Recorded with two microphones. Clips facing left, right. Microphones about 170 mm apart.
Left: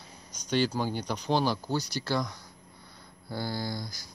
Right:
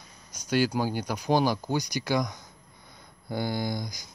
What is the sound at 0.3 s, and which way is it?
Speech, 10° right (ahead or behind).